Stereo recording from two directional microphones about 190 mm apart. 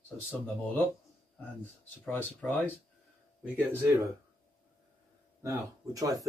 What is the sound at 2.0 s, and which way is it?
Speech, 10° left (ahead or behind).